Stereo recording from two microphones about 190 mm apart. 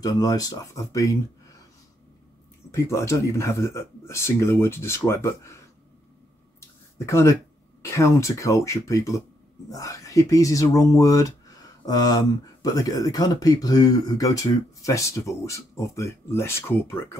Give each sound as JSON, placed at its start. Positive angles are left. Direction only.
{"t": 0.0, "sound": "speech", "side_deg": 20}
{"t": 2.7, "sound": "speech", "side_deg": 15}
{"t": 6.6, "sound": "a sound", "side_deg": 15}
{"t": 7.8, "sound": "speech", "side_deg": 15}